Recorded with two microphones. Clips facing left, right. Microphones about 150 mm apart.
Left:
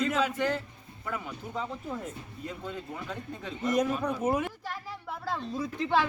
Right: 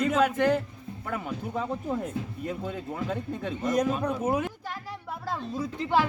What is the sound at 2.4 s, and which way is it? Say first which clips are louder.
Speech: right 1 dB; 55° right (ahead or behind).